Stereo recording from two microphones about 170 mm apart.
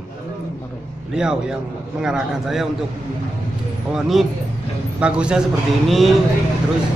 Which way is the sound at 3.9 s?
Centre (ahead or behind).